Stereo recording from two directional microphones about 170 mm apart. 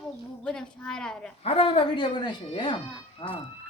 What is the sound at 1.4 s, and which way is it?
A woman's voice, 35° left (ahead or behind).